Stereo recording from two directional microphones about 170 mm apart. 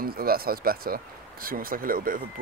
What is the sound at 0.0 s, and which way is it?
Speech, 60° right (ahead or behind).